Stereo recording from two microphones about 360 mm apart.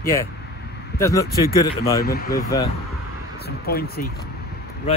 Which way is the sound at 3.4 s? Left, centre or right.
Left.